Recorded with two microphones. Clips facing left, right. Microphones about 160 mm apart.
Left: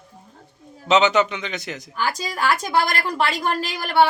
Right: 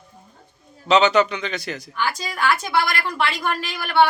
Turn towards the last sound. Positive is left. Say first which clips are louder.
# even
turn(degrees=40)  # may be behind; listen again after turning